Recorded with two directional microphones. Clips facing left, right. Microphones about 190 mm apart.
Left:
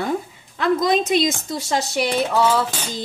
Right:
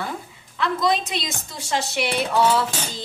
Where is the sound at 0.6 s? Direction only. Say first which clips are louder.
Left 4 dB; 45° left (ahead or behind).